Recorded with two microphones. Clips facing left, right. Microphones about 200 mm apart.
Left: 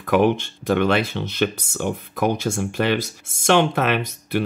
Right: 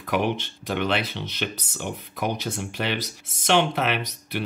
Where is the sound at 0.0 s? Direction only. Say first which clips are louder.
Left 7 dB; 50° left (ahead or behind).